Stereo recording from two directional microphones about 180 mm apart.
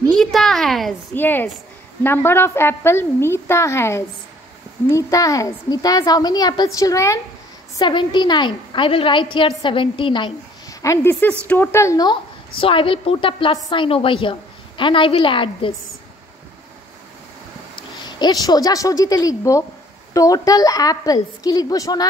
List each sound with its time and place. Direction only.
0.1 s a sound: centre (ahead or behind)
1.1 s a woman's voice: 10° left (ahead or behind); by 15.7 s 30° left (ahead or behind)
17.7 s a woman's voice: 25° left (ahead or behind)